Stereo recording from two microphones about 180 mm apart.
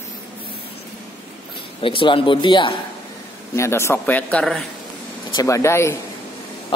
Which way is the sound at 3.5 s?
15° left (ahead or behind).